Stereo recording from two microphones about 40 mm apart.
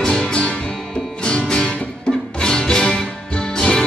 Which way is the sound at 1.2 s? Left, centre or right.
Left.